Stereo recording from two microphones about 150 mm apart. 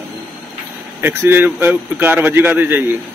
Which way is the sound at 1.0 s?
15° right (ahead or behind).